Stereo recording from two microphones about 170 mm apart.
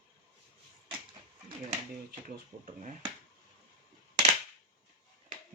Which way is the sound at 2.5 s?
50° right (ahead or behind).